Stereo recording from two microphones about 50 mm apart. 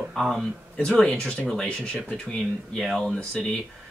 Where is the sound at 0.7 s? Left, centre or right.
Centre.